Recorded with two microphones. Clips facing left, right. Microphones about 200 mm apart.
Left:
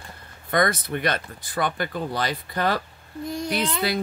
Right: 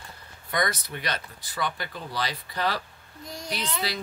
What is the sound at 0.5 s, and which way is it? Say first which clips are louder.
Speech: left 6 dB; 50° left (ahead or behind).